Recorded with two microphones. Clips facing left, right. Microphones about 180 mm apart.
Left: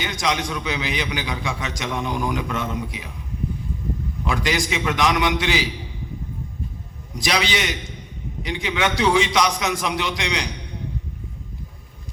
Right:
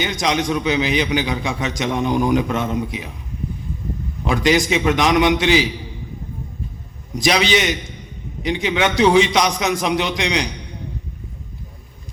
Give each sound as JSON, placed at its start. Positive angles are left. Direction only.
{"t": 0.0, "sound": "a man's voice", "side_deg": -20}
{"t": 4.2, "sound": "a man's voice", "side_deg": -20}
{"t": 7.1, "sound": "a man's voice", "side_deg": -20}